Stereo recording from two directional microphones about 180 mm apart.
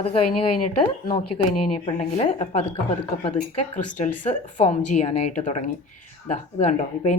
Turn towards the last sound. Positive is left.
turn(degrees=40)  # may be behind; listen again after turning